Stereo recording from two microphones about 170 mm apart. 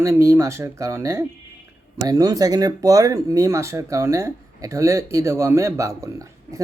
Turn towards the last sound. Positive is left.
turn(degrees=-20)  # may be behind; listen again after turning